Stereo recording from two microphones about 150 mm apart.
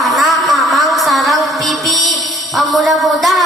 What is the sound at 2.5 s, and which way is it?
Speech, centre (ahead or behind).